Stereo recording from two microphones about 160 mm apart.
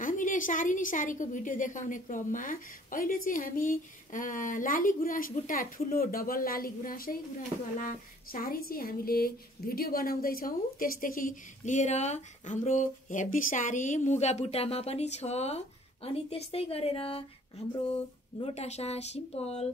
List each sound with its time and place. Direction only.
0.0 s a woman's voice: 55° left (ahead or behind); by 17.2 s 35° left (ahead or behind)
18.4 s speech: 40° left (ahead or behind)